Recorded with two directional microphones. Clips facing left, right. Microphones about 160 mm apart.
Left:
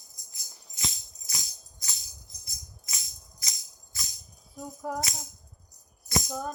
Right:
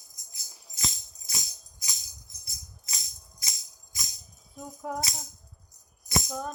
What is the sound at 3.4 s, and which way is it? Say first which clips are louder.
Music: right 1 dB; 25° right (ahead or behind).